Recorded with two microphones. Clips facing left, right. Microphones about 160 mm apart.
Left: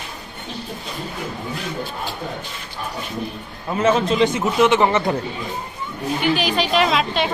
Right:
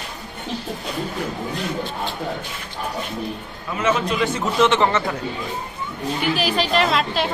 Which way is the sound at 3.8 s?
30° left (ahead or behind).